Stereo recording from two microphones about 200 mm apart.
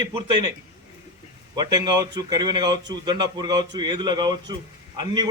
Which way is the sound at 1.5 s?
20° right (ahead or behind).